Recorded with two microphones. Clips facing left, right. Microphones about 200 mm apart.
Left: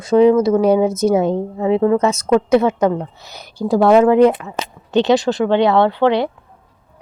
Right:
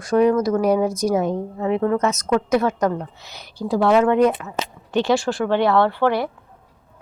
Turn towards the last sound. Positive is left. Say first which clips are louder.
# left 4 dB
turn(degrees=20)  # may be behind; listen again after turning